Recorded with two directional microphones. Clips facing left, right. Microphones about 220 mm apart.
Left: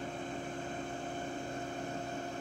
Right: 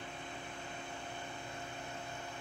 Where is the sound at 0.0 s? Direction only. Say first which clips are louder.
Left 7 dB; 45° left (ahead or behind).